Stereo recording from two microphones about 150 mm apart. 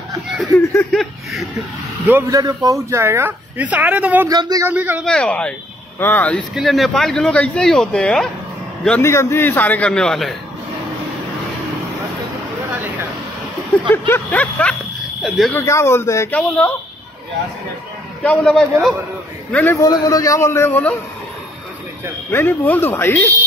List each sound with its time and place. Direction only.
2.0 s speech: 10° right (ahead or behind)
2.3 s speech: 25° right (ahead or behind)
4.3 s speech: 25° right (ahead or behind)
4.6 s speech: 10° right (ahead or behind)
5.0 s a man's voice: 5° left (ahead or behind)
6.5 s speech: centre (ahead or behind)
9.0 s a man's voice: 20° left (ahead or behind)
14.0 s a man's voice: 10° left (ahead or behind)
15.5 s a man's voice: 20° left (ahead or behind)
18.2 s speech: 5° left (ahead or behind)
19.5 s a man's voice: 15° left (ahead or behind)
22.3 s a man's voice: 15° left (ahead or behind)